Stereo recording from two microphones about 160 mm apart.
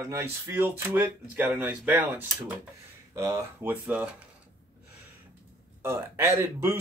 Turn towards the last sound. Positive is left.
turn(degrees=-15)  # may be behind; listen again after turning